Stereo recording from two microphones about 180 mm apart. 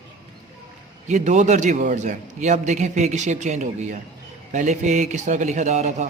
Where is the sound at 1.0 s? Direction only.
40° right (ahead or behind).